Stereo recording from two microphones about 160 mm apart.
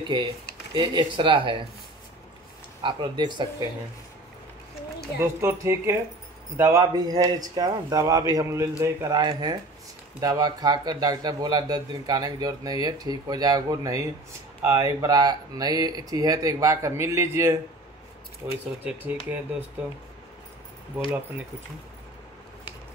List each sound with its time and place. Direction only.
0.0 s speech: 30° right (ahead or behind)
2.8 s speech: 30° right (ahead or behind)
5.2 s speech: 15° right (ahead or behind)